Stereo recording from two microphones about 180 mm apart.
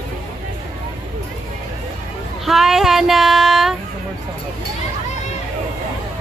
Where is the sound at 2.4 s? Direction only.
Centre (ahead or behind).